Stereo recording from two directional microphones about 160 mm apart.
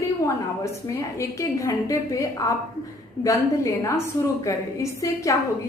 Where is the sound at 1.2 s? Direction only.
20° left (ahead or behind).